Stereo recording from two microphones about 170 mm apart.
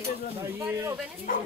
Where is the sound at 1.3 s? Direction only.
55° left (ahead or behind).